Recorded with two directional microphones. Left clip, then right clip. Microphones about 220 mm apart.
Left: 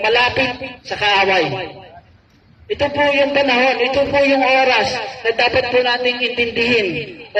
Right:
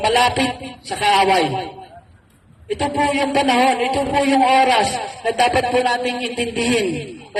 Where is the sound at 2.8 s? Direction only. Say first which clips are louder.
Left 4 dB; 50° right (ahead or behind).